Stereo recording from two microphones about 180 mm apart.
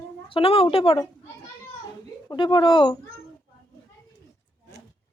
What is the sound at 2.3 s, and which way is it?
Speech, 25° left (ahead or behind).